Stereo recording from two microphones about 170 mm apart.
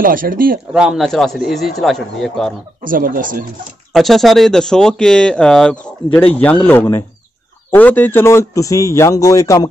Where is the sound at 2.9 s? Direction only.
55° right (ahead or behind).